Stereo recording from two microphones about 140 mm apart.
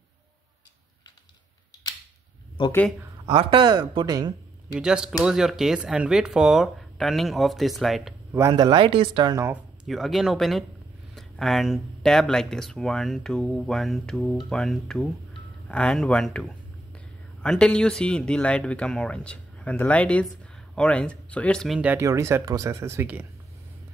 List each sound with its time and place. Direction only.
2.6 s speech: 35° left (ahead or behind)
3.3 s speech: 35° right (ahead or behind)
4.7 s speech: 5° right (ahead or behind)
8.5 s speech: 30° right (ahead or behind)
9.8 s speech: centre (ahead or behind)
21.7 s speech: 10° right (ahead or behind)
22.0 s speech: 20° right (ahead or behind)